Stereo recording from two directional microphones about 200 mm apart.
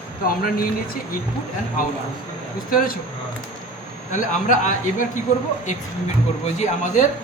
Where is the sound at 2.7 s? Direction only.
45° left (ahead or behind).